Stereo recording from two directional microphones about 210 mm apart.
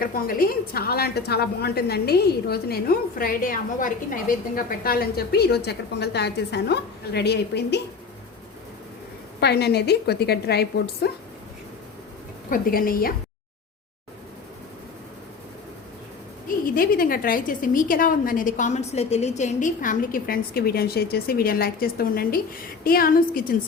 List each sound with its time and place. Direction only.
0.0 s a woman's voice: 45° left (ahead or behind)
9.4 s a woman's voice: 50° left (ahead or behind)
12.5 s a woman's voice: 45° left (ahead or behind)
16.6 s a woman's voice: 45° left (ahead or behind)